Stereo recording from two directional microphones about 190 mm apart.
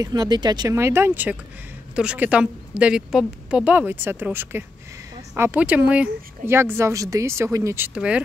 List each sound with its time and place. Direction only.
0.0 s speech: 20° right (ahead or behind)